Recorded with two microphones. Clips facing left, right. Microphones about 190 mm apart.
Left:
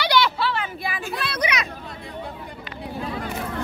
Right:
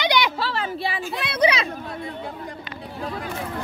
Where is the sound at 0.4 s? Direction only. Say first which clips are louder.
Even; 35° right (ahead or behind).